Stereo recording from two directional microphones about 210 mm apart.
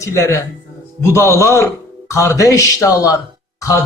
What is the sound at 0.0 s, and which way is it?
Speech, 15° left (ahead or behind).